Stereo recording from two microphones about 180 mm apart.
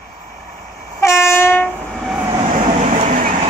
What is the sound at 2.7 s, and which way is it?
Vehicle, 35° right (ahead or behind).